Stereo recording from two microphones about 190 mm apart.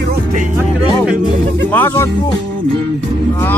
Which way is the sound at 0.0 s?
50° right (ahead or behind).